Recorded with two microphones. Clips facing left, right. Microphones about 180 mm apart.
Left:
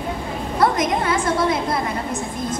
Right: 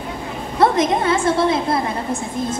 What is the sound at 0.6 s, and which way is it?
A woman's voice, 25° right (ahead or behind).